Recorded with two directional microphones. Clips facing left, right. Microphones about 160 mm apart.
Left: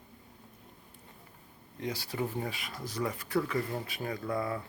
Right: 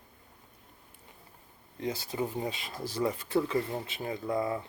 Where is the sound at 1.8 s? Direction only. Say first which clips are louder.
Right 2 dB; 25° right (ahead or behind).